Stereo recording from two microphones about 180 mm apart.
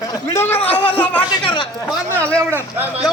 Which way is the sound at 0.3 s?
10° left (ahead or behind).